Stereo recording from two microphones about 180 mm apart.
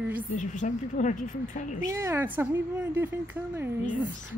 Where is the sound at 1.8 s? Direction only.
15° right (ahead or behind).